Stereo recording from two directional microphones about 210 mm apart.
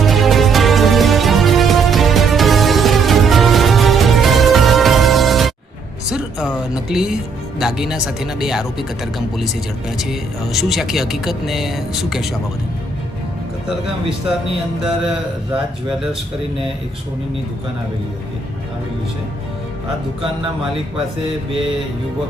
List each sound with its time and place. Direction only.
0.0 s music: centre (ahead or behind)
6.1 s a sound: 5° right (ahead or behind)
6.5 s speech: centre (ahead or behind)
10.0 s speech: centre (ahead or behind)